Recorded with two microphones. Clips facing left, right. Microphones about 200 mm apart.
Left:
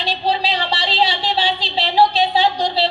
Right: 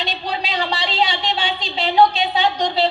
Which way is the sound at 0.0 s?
35° left (ahead or behind).